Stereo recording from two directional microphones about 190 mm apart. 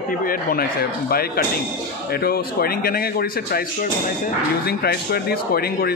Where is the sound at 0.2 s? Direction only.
50° left (ahead or behind).